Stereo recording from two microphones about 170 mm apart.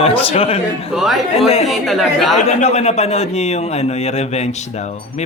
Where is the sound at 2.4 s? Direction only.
40° left (ahead or behind).